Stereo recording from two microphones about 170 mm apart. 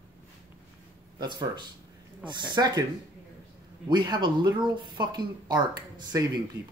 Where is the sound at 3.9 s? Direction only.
25° right (ahead or behind).